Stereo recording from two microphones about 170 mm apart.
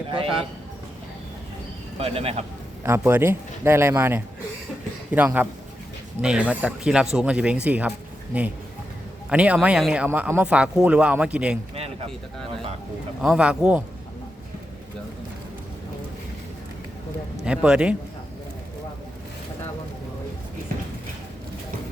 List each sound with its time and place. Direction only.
2.0 s speech: 35° right (ahead or behind)
2.8 s speech: 10° right (ahead or behind)
11.7 s a sound: 35° right (ahead or behind)
13.2 s speech: 5° right (ahead or behind)
17.4 s speech: 5° right (ahead or behind)